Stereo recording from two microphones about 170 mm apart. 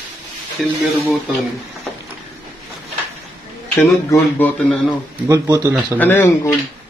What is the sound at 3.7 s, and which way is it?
Speech, 10° left (ahead or behind).